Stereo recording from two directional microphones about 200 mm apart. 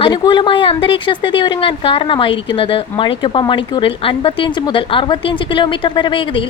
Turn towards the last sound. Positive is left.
turn(degrees=25)  # may be behind; listen again after turning